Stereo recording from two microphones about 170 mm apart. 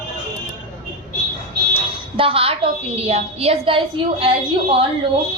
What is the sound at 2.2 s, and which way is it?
A woman's voice, 35° right (ahead or behind).